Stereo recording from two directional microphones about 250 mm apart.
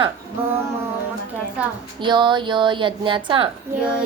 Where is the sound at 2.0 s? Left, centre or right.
Centre.